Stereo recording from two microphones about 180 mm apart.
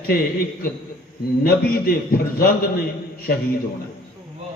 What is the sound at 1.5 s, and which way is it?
Speech, 55° left (ahead or behind).